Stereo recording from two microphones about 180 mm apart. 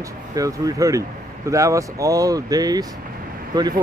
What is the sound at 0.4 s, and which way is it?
Speech, 20° right (ahead or behind).